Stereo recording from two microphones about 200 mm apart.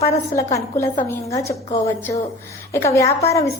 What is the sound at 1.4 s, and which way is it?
Speech, 30° left (ahead or behind).